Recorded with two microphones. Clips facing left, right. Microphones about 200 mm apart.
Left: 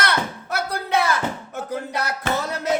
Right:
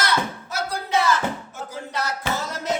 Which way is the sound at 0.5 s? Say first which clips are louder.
Left 1 dB; 60° left (ahead or behind).